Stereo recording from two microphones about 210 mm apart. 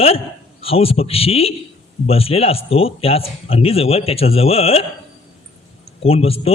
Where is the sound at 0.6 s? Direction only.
25° left (ahead or behind).